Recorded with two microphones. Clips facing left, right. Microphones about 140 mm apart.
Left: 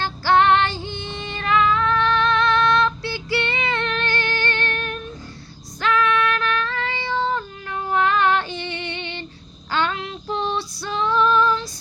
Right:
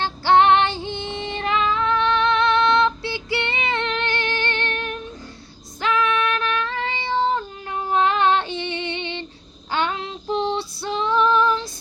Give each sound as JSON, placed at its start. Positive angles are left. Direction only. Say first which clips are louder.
{"t": 0.0, "sound": "female singing", "louder": "right 1 dB", "side_deg": -20}